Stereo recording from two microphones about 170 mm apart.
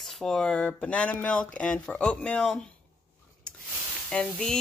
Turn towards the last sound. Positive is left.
turn(degrees=5)  # may be behind; listen again after turning